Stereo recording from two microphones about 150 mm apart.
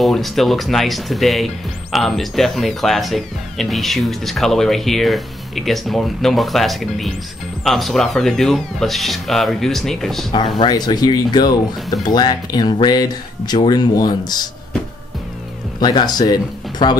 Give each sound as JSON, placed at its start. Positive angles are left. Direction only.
{"t": 0.0, "sound": "speech", "side_deg": 0}
{"t": 10.6, "sound": "speech", "side_deg": 25}
{"t": 15.8, "sound": "speech", "side_deg": 30}